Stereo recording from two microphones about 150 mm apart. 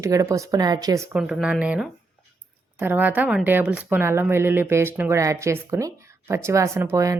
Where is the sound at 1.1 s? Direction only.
5° right (ahead or behind).